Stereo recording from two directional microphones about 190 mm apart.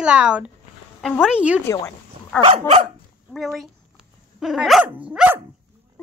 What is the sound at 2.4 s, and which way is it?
Speech, 30° right (ahead or behind).